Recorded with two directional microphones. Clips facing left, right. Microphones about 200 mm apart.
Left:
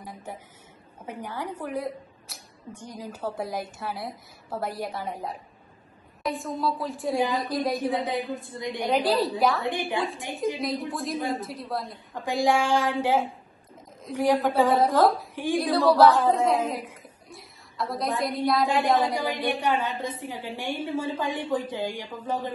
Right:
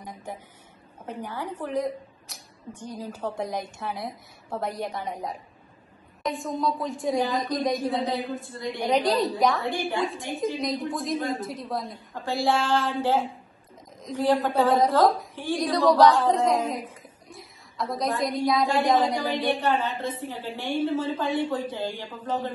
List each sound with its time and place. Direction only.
0.0 s a woman's voice: 5° left (ahead or behind)
8.1 s a woman's voice: 15° left (ahead or behind)
8.8 s a woman's voice: centre (ahead or behind)
9.6 s a woman's voice: 20° left (ahead or behind)
9.9 s a woman's voice: centre (ahead or behind)
12.2 s a woman's voice: 15° left (ahead or behind)
15.9 s a woman's voice: centre (ahead or behind)
19.2 s a woman's voice: 10° left (ahead or behind)